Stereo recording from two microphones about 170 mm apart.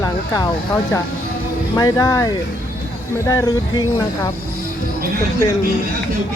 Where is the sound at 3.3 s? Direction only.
20° left (ahead or behind).